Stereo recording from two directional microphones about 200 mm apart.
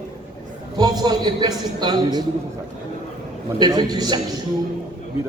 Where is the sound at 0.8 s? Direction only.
20° right (ahead or behind).